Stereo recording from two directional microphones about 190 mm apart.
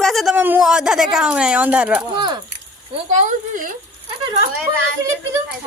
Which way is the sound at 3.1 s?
40° right (ahead or behind).